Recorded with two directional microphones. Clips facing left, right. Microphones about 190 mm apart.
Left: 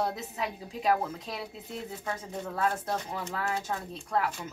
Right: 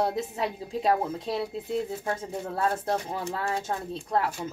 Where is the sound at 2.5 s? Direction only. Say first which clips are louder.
Right 3 dB; 30° right (ahead or behind).